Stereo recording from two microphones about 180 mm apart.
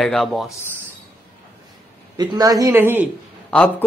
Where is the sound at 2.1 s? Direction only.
20° right (ahead or behind).